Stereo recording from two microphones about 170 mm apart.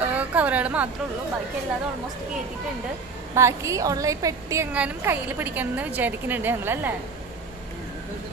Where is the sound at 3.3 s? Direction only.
15° right (ahead or behind).